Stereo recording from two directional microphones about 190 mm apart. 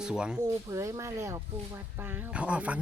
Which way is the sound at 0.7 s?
15° right (ahead or behind).